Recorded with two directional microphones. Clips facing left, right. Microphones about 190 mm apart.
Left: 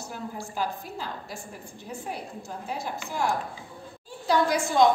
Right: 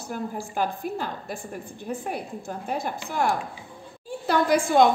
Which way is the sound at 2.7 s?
60° right (ahead or behind).